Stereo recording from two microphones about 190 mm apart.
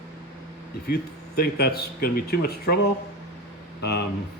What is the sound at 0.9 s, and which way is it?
Speech, 55° left (ahead or behind).